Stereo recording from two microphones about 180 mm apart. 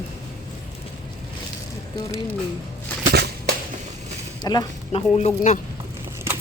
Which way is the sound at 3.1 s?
65° right (ahead or behind).